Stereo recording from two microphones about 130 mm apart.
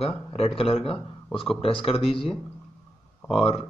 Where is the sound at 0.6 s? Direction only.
45° left (ahead or behind).